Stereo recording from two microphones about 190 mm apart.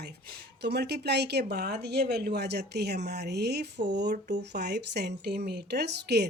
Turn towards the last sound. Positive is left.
turn(degrees=-60)  # may be behind; listen again after turning